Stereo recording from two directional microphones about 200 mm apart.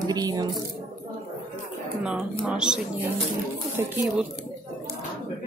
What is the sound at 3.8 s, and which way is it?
Speech, 15° right (ahead or behind).